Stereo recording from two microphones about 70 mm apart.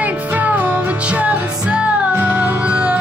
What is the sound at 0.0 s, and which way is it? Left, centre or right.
Music, right.